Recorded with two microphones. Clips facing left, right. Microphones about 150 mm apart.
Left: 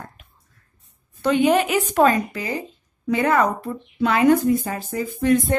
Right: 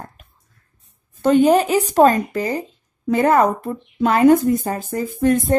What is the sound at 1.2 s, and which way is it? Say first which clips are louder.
A woman's voice: right 4 dB; 45° right (ahead or behind).